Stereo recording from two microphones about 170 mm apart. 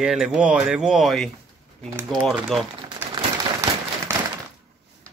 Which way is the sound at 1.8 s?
15° right (ahead or behind).